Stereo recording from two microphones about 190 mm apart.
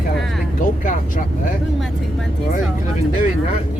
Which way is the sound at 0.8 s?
45° left (ahead or behind).